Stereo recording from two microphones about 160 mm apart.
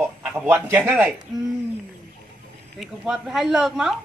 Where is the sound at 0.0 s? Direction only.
10° right (ahead or behind).